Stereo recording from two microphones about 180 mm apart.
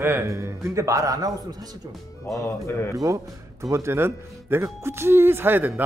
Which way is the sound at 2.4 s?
15° left (ahead or behind).